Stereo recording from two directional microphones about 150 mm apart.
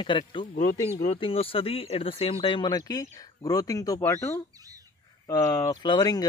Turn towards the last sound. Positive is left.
turn(degrees=25)  # may be behind; listen again after turning